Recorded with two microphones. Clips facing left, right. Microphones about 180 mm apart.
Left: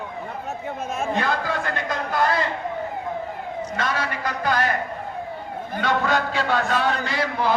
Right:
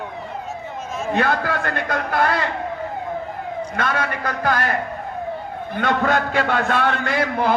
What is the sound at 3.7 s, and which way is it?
Speech, 55° right (ahead or behind).